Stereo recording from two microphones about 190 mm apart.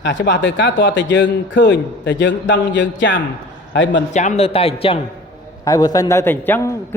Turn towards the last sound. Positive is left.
turn(degrees=15)  # may be behind; listen again after turning